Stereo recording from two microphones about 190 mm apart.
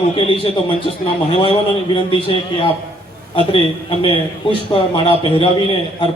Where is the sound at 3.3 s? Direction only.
30° left (ahead or behind).